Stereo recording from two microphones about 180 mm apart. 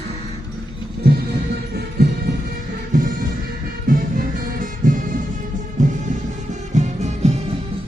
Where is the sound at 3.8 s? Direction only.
50° right (ahead or behind).